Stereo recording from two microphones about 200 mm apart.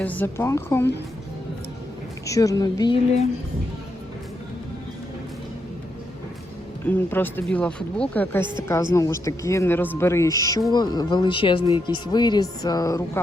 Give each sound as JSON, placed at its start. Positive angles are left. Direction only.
{"t": 0.0, "sound": "speech", "side_deg": 10}
{"t": 2.2, "sound": "speech", "side_deg": 15}
{"t": 6.8, "sound": "speech", "side_deg": 10}